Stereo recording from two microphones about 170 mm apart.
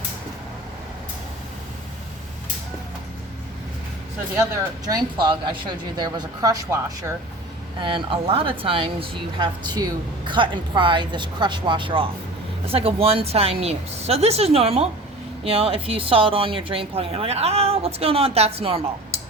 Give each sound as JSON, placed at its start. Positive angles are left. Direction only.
{"t": 4.9, "sound": "speech", "side_deg": -25}
{"t": 7.8, "sound": "a woman's voice", "side_deg": -30}